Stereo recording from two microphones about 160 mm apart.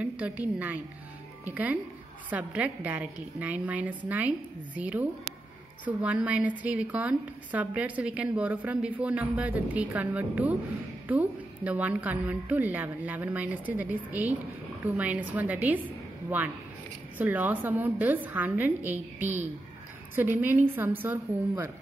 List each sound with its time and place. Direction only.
0.0 s a woman's voice: 10° right (ahead or behind)